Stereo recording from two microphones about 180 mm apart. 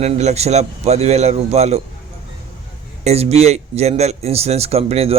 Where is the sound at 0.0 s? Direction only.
35° right (ahead or behind).